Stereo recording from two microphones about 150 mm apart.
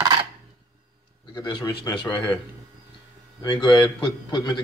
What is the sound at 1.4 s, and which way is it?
Speech, 25° left (ahead or behind).